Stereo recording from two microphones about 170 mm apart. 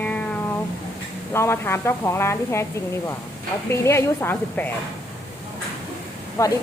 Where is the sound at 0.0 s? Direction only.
10° left (ahead or behind).